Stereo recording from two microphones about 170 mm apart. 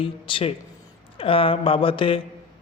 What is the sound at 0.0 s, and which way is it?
A man's voice, 30° left (ahead or behind).